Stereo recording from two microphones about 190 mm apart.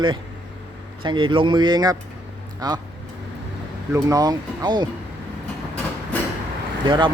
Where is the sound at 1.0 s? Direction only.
25° right (ahead or behind).